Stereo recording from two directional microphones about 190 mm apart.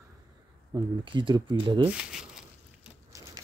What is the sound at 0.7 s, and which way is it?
Speech, 25° right (ahead or behind).